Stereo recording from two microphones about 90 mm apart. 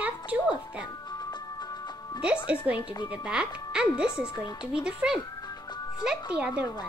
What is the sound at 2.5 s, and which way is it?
Speech, 15° right (ahead or behind).